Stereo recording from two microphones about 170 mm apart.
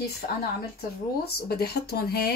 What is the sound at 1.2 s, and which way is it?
Speech, 65° left (ahead or behind).